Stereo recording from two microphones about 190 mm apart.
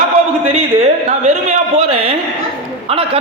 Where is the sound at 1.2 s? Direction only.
35° right (ahead or behind).